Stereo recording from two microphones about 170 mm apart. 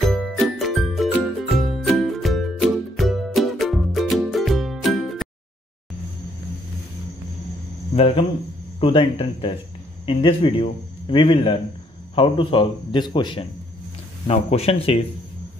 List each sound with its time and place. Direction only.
0.0 s music: centre (ahead or behind)
7.9 s a man's voice: 35° left (ahead or behind)